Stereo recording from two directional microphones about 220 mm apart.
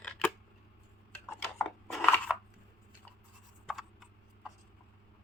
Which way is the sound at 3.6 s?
Centre (ahead or behind).